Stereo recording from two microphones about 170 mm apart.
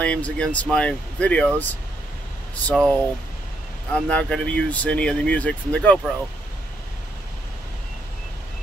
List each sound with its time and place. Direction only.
0.0 s speech: 5° left (ahead or behind)